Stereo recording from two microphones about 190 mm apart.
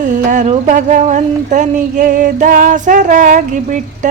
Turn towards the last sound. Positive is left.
turn(degrees=-40)  # may be behind; listen again after turning